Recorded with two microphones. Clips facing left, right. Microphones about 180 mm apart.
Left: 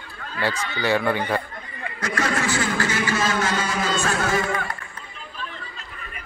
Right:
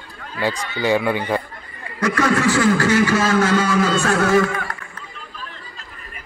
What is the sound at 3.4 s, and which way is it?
Speech, 60° right (ahead or behind).